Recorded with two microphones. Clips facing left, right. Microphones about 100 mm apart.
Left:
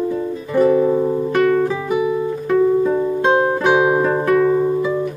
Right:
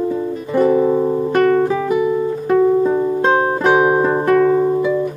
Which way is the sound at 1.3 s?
35° right (ahead or behind).